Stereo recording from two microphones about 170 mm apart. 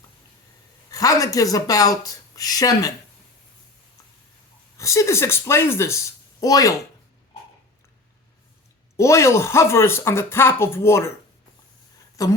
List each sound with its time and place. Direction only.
0.9 s speech: 20° left (ahead or behind)
4.8 s speech: 20° left (ahead or behind)
9.0 s speech: 15° left (ahead or behind)
12.2 s speech: 20° left (ahead or behind)